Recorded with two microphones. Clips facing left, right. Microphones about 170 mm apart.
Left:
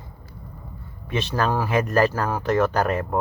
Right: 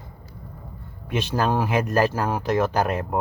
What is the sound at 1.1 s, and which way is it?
Speech, 15° right (ahead or behind).